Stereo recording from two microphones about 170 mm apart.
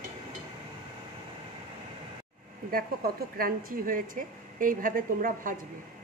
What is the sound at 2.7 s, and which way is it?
Speech, 60° right (ahead or behind).